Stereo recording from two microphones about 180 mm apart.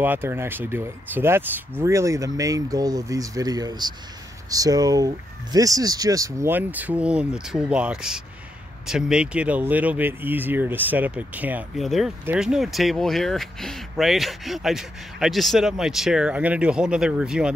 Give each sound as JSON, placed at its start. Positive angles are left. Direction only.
{"t": 0.0, "sound": "speech", "side_deg": -10}